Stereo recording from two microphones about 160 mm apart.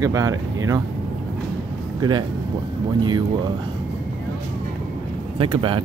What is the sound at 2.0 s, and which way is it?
Speech, 25° right (ahead or behind).